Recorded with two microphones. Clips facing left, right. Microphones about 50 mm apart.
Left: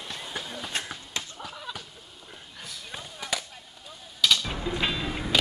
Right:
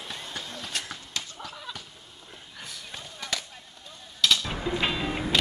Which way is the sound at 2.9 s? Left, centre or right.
Centre.